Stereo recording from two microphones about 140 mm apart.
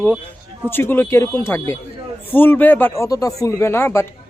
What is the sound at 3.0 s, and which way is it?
Speech, 25° left (ahead or behind).